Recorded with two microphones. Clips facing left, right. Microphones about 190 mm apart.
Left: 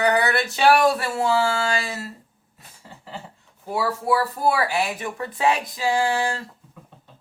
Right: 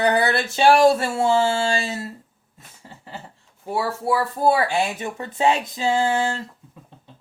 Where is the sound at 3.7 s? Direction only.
25° right (ahead or behind).